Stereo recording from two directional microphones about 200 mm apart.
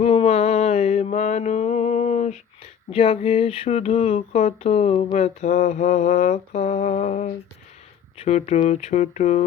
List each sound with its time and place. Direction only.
0.0 s mantra: 30° left (ahead or behind)
2.9 s speech: 25° left (ahead or behind)
3.2 s mantra: 30° left (ahead or behind)